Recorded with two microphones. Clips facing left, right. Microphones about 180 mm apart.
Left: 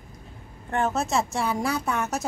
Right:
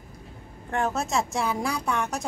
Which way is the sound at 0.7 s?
Centre (ahead or behind).